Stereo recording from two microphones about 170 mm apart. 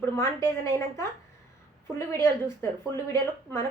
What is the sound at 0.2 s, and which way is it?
Speech, 15° left (ahead or behind).